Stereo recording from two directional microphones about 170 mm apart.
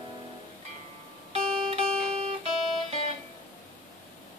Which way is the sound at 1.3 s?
35° right (ahead or behind).